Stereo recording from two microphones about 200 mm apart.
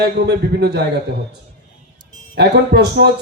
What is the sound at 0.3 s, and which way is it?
Speech, 55° right (ahead or behind).